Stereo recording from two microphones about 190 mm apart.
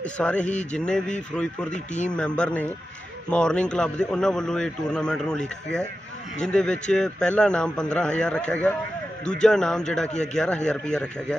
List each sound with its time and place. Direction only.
0.0 s a man's voice: 5° left (ahead or behind)